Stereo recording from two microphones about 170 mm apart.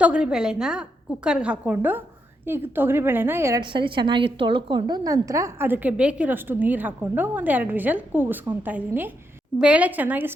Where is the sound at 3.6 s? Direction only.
30° right (ahead or behind).